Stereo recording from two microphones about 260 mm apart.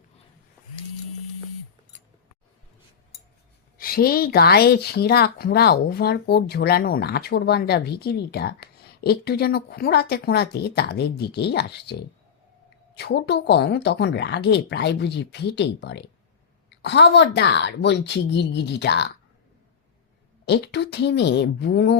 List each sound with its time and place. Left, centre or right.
3.8 s speech: left
20.4 s speech: left